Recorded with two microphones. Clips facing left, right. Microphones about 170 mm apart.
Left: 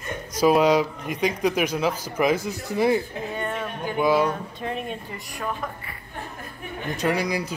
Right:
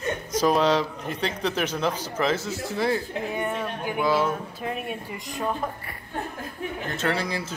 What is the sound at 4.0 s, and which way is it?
Speech, 15° left (ahead or behind).